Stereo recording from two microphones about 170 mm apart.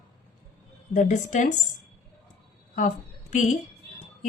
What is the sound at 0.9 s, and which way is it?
Speech, 45° left (ahead or behind).